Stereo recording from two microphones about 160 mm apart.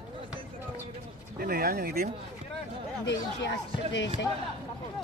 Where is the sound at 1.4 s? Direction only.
70° right (ahead or behind).